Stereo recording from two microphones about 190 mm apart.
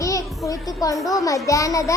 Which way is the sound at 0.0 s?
15° left (ahead or behind).